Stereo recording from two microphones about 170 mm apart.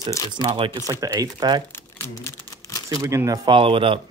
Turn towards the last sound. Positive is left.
turn(degrees=-30)  # may be behind; listen again after turning